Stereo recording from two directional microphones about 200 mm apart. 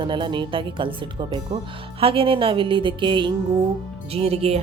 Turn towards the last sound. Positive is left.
turn(degrees=-30)  # may be behind; listen again after turning